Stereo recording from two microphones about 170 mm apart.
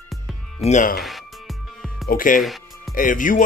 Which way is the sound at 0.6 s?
45° left (ahead or behind).